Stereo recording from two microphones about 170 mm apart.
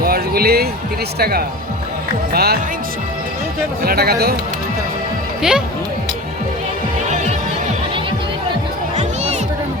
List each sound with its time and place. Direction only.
0.0 s music: 65° right (ahead or behind)
1.2 s speech: 65° right (ahead or behind)
3.8 s speech: 65° right (ahead or behind)
5.4 s speech: 5° right (ahead or behind)
9.0 s music: 40° right (ahead or behind)